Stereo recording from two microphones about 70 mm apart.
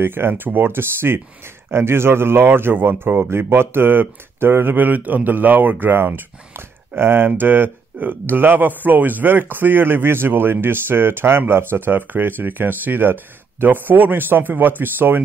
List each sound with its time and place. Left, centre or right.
0.0 s speech: right